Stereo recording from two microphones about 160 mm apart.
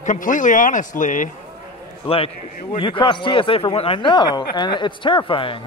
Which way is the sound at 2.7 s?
30° left (ahead or behind).